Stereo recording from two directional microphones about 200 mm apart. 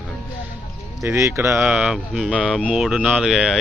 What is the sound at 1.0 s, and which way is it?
Speech, 15° right (ahead or behind).